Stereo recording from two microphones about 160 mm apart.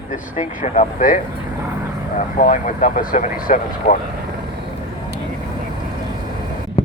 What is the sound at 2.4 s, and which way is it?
Speech, 55° left (ahead or behind).